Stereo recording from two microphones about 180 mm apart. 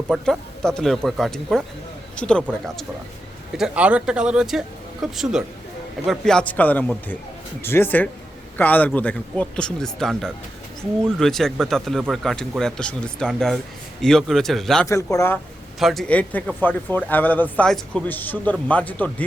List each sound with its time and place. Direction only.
0.1 s speech: 5° left (ahead or behind)
3.6 s a man's voice: 5° right (ahead or behind)
14.8 s a man's voice: 15° left (ahead or behind)
15.8 s a man's voice: centre (ahead or behind)